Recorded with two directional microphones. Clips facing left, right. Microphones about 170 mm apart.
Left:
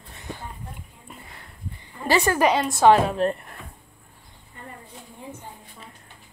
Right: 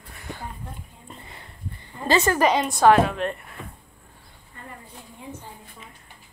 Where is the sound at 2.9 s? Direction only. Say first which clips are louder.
Left 1 dB; 35° left (ahead or behind).